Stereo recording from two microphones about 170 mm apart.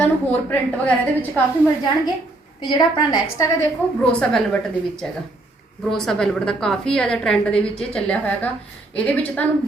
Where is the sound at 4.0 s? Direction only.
5° left (ahead or behind).